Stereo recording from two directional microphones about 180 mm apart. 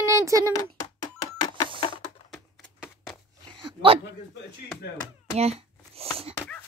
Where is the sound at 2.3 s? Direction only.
Centre (ahead or behind).